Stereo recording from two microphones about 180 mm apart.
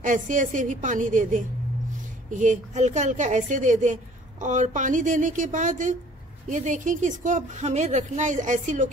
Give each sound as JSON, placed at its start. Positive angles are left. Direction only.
{"t": 0.0, "sound": "a woman's voice", "side_deg": -45}